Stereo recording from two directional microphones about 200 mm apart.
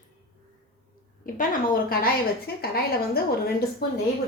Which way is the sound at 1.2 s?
45° left (ahead or behind).